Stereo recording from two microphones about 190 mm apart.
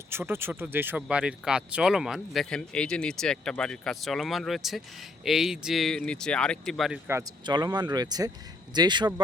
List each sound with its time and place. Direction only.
0.1 s speech: 10° right (ahead or behind)
7.1 s speech: 15° right (ahead or behind)